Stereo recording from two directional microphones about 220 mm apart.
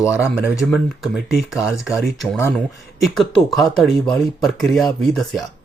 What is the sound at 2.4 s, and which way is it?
Speech, 10° left (ahead or behind).